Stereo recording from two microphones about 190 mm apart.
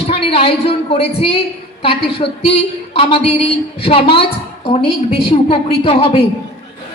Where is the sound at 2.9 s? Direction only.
30° left (ahead or behind).